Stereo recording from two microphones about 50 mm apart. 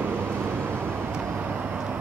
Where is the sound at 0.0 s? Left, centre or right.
Right.